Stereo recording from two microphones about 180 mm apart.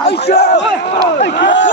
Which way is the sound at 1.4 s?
85° left.